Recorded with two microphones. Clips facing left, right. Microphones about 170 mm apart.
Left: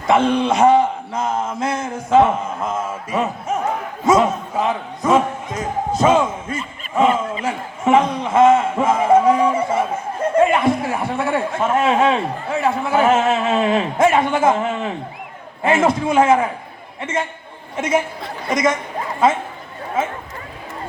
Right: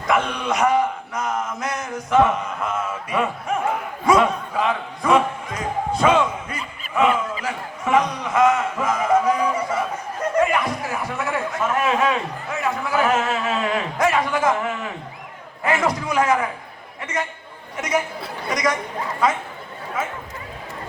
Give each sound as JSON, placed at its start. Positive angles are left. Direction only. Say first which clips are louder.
{"t": 0.1, "sound": "a man's voice", "louder": "left 6 dB", "side_deg": 25}
{"t": 7.4, "sound": "a man's voice", "louder": "left 6 dB", "side_deg": 25}